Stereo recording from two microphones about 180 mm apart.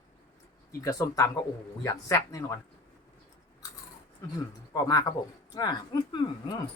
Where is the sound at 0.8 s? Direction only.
20° left (ahead or behind).